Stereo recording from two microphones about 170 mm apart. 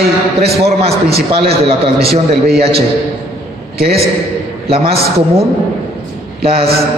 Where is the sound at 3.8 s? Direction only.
65° right (ahead or behind).